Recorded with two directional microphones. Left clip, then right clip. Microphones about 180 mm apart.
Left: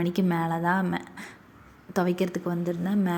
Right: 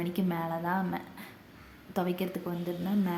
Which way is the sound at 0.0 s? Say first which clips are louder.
Left 6 dB; 30° left (ahead or behind).